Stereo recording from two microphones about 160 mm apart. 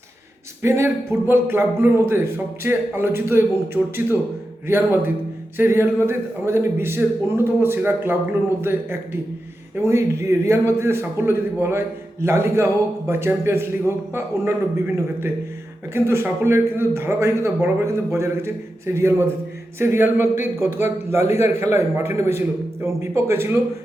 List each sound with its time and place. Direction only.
0.6 s a man's voice: 15° right (ahead or behind)
4.6 s a man's voice: 15° right (ahead or behind)